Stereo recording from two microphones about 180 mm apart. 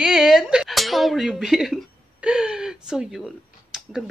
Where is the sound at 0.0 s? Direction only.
Centre (ahead or behind).